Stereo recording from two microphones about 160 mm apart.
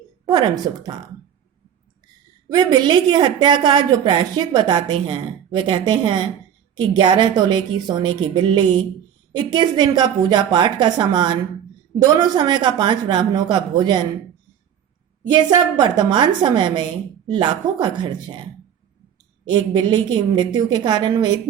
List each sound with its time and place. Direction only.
0.3 s a woman's voice: 25° right (ahead or behind)
2.5 s a woman's voice: 25° right (ahead or behind)
15.3 s a woman's voice: 30° right (ahead or behind)
19.5 s a woman's voice: 25° right (ahead or behind)